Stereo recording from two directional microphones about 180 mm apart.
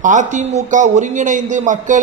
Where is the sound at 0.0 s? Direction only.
45° right (ahead or behind).